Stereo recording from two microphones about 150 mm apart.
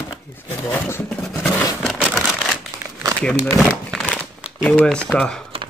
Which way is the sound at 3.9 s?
5° left (ahead or behind).